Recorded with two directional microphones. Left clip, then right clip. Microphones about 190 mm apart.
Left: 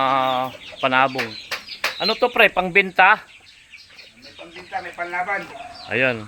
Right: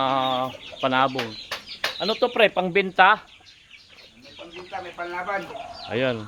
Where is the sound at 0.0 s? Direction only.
Centre (ahead or behind).